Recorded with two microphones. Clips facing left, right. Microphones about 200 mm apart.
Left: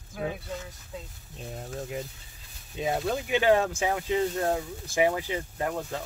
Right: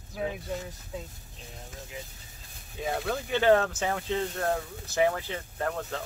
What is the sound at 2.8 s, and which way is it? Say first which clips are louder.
Speech: left 3 dB; 20° left (ahead or behind).